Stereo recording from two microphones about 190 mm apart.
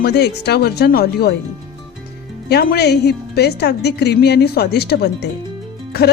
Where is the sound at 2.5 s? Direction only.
55° left (ahead or behind).